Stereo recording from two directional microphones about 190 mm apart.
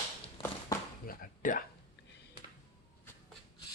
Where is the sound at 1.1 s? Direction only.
45° left (ahead or behind).